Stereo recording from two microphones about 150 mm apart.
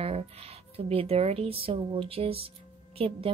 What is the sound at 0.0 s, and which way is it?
Speech, 40° right (ahead or behind).